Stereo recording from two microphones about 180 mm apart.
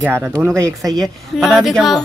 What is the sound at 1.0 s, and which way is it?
Speech, centre (ahead or behind).